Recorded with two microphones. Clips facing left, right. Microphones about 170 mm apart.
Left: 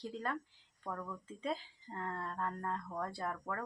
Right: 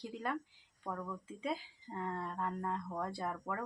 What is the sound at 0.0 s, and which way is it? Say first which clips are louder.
Speech: right 1 dB; 10° right (ahead or behind).